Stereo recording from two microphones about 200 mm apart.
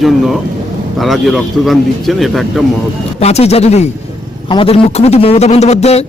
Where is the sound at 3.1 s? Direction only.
30° left (ahead or behind).